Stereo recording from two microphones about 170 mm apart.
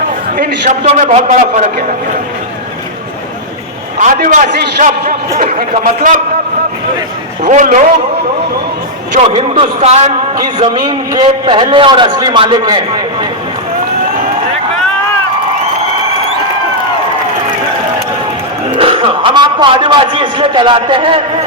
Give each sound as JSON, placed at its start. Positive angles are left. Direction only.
{"t": 0.3, "sound": "a man's voice", "side_deg": -45}
{"t": 3.9, "sound": "a man's voice", "side_deg": -50}
{"t": 7.4, "sound": "a man's voice", "side_deg": -45}
{"t": 9.3, "sound": "a man's voice", "side_deg": -35}
{"t": 10.3, "sound": "a man's voice", "side_deg": -25}
{"t": 18.8, "sound": "a man's voice", "side_deg": -30}